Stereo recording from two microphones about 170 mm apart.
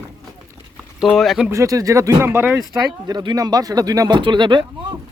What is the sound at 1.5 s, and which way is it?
Speech, 20° right (ahead or behind).